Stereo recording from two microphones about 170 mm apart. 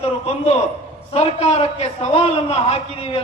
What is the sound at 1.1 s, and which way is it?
A man's voice, 40° left (ahead or behind).